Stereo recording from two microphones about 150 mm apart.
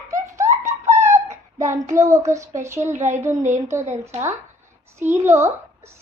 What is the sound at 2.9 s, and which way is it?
Speech, 50° right (ahead or behind).